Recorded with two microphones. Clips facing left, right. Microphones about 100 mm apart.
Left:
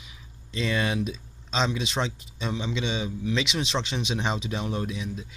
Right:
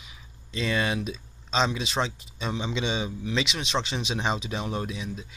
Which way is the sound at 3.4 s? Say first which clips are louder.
Left 2 dB; 25° left (ahead or behind).